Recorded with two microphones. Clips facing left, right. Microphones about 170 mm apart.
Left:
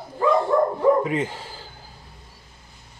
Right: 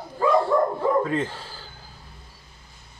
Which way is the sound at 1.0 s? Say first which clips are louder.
Left 1 dB; 15° left (ahead or behind).